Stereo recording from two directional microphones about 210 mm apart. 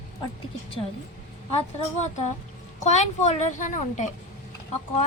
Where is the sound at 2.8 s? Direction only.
35° left (ahead or behind).